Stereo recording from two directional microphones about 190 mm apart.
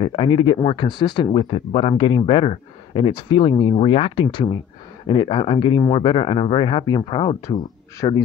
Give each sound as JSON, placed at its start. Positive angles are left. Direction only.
{"t": 0.0, "sound": "speech", "side_deg": 25}